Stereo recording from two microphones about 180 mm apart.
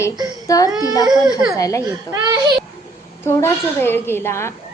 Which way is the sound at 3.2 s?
15° left (ahead or behind).